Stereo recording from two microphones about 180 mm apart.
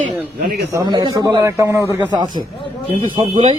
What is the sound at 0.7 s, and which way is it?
A man's voice, 25° right (ahead or behind).